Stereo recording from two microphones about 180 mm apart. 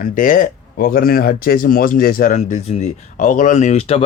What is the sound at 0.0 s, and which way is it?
Speech, 50° left (ahead or behind).